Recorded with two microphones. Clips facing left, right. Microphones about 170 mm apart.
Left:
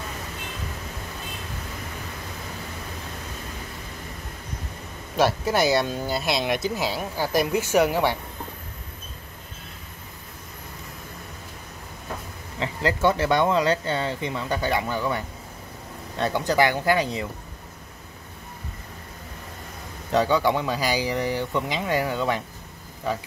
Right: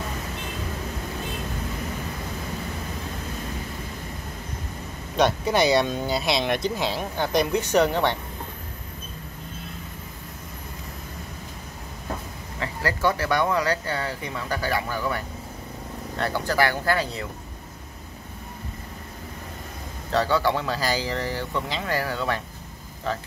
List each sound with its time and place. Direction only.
5.1 s speech: 5° left (ahead or behind)
12.5 s speech: 20° left (ahead or behind)
20.1 s speech: 15° left (ahead or behind)